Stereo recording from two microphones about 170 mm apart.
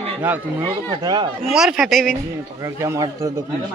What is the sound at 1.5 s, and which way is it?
Speech, 5° right (ahead or behind).